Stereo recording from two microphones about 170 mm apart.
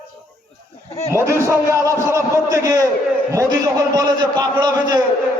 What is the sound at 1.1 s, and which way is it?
A man's voice, 15° right (ahead or behind).